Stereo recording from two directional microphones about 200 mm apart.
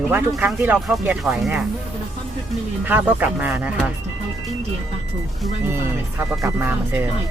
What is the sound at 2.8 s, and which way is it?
Speech, 10° right (ahead or behind).